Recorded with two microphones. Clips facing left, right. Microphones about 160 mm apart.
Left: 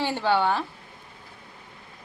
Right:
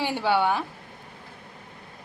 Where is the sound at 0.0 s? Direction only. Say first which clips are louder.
Even; 10° right (ahead or behind).